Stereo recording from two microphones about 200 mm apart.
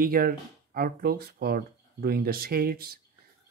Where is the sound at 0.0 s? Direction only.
45° right (ahead or behind).